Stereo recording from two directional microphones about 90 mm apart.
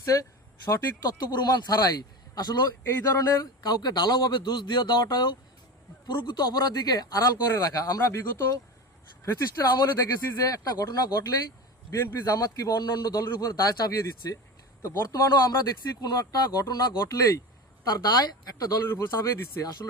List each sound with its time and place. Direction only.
0.0 s a man's voice: 40° left (ahead or behind)
17.8 s speech: 45° left (ahead or behind)
18.9 s speech: 25° left (ahead or behind)
19.2 s a man's voice: 40° left (ahead or behind)